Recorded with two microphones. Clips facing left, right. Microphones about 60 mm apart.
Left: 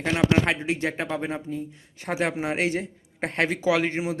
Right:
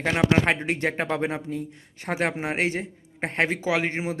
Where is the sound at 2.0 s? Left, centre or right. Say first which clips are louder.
Even; right.